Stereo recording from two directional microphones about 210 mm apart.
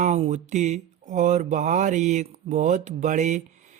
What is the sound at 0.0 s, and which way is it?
Speech, 35° right (ahead or behind).